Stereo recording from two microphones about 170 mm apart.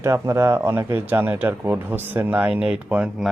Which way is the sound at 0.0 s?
15° right (ahead or behind).